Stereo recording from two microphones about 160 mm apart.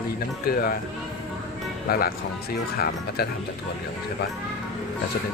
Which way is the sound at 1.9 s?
75° left (ahead or behind).